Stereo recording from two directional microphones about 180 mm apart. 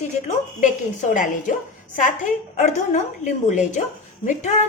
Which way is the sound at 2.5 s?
40° left (ahead or behind).